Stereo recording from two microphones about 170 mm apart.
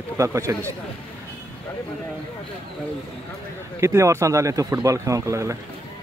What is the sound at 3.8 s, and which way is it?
A man's voice, 15° right (ahead or behind).